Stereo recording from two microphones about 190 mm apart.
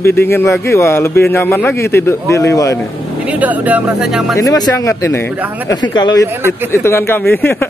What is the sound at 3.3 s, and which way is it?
Speech, 10° right (ahead or behind).